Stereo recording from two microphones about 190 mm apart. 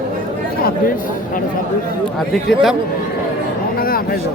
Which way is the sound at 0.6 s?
50° left (ahead or behind).